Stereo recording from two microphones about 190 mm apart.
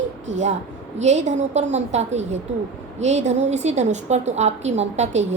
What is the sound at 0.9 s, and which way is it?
A woman's voice, 35° right (ahead or behind).